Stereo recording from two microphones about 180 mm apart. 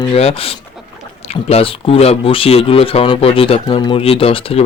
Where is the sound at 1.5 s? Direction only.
35° left (ahead or behind).